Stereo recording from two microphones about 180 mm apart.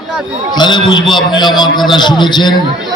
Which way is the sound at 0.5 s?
25° left (ahead or behind).